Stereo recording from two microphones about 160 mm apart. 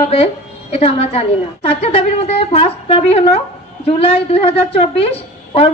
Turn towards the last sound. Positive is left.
turn(degrees=40)  # may be behind; listen again after turning